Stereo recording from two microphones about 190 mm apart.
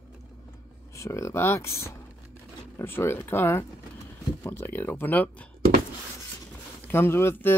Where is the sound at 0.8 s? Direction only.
15° left (ahead or behind).